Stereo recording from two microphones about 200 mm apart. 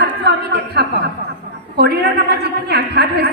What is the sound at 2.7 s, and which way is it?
Speech, 55° right (ahead or behind).